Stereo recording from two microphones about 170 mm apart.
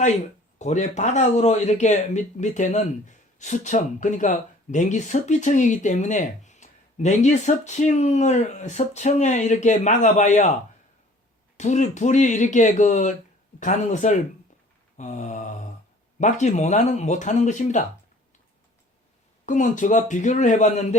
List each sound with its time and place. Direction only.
0.6 s speech: 45° left (ahead or behind)
11.5 s speech: 45° left (ahead or behind)
14.9 s mantra: 45° left (ahead or behind)
16.2 s speech: 45° left (ahead or behind)
19.5 s speech: 50° left (ahead or behind)